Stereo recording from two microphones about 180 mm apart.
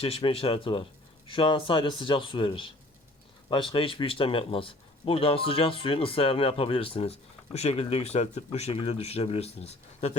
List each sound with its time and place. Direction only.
0.0 s a man's voice: 30° left (ahead or behind)